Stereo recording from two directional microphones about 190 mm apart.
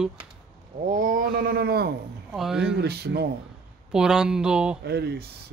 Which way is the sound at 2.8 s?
60° right (ahead or behind).